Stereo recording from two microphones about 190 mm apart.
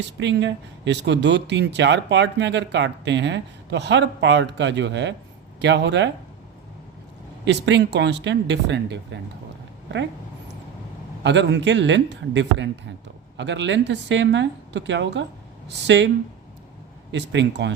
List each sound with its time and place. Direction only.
0.2 s speech: 65° right (ahead or behind)
7.4 s speech: 65° right (ahead or behind)
11.2 s speech: 70° right (ahead or behind)